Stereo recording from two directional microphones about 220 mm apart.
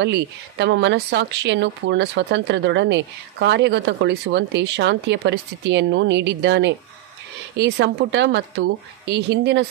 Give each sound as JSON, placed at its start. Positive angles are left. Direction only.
{"t": 0.0, "sound": "speech", "side_deg": -50}